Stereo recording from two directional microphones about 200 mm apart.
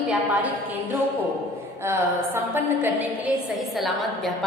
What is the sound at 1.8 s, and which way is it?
A woman's voice, 10° right (ahead or behind).